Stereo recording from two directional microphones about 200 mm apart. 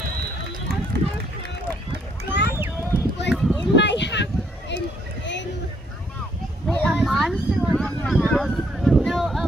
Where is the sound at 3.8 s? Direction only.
60° left (ahead or behind).